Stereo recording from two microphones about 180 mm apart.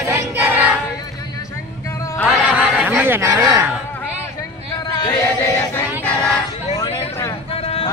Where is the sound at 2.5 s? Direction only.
5° right (ahead or behind).